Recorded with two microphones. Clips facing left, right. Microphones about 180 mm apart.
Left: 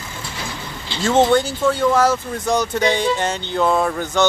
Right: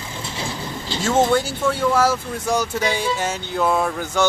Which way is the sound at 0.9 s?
40° right (ahead or behind).